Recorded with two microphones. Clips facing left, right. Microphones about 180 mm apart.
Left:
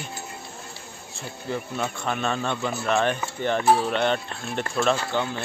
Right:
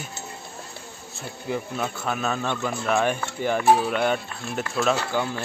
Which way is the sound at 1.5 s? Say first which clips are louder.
Right 1 dB; 5° right (ahead or behind).